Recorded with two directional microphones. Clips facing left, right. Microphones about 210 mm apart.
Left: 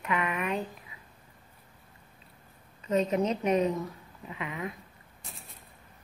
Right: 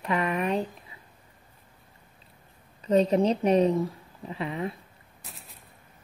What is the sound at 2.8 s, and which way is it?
A woman's voice, 35° right (ahead or behind).